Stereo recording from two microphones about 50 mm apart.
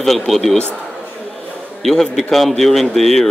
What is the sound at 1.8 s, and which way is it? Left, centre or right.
A man's voice, centre.